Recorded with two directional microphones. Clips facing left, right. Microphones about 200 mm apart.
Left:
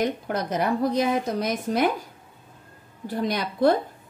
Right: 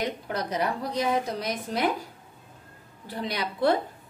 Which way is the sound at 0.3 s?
50° left (ahead or behind).